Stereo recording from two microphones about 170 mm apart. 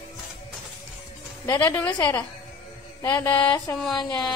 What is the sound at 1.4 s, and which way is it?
Speech, 15° left (ahead or behind).